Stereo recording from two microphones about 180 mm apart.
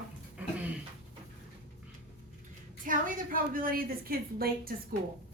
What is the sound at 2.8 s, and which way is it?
A woman's voice, 45° right (ahead or behind).